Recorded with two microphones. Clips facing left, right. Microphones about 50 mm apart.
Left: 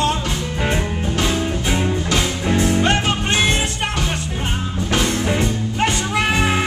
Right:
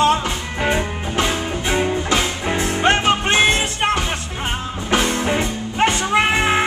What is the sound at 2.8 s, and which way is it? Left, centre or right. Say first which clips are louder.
Music: right 3 dB; right.